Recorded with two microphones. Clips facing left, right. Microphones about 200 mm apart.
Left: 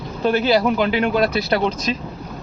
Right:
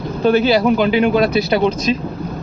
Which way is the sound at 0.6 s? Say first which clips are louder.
Right 4 dB; 20° right (ahead or behind).